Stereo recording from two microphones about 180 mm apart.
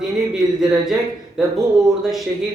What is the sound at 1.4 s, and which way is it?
Speech, centre (ahead or behind).